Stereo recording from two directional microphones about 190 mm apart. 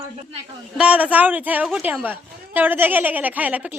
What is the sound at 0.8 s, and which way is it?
A woman's voice, 5° right (ahead or behind).